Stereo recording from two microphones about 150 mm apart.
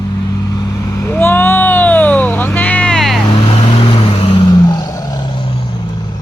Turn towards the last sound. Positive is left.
turn(degrees=30)  # may be behind; listen again after turning